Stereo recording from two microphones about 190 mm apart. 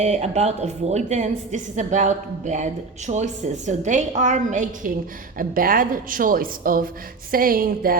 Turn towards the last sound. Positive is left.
turn(degrees=-50)  # may be behind; listen again after turning